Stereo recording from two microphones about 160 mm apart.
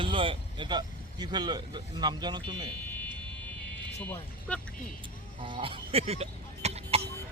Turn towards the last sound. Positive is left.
turn(degrees=-40)  # may be behind; listen again after turning